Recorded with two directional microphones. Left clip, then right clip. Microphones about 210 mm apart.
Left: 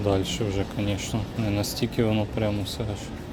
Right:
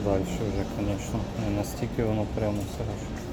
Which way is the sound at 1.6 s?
50° left (ahead or behind).